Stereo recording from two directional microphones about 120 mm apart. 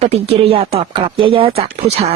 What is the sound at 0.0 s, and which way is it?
Speech, 55° right (ahead or behind).